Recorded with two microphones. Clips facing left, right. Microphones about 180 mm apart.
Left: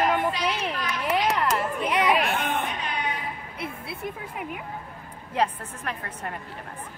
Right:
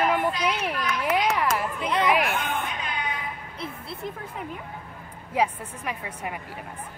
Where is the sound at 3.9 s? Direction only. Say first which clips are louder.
Even; 10° left (ahead or behind).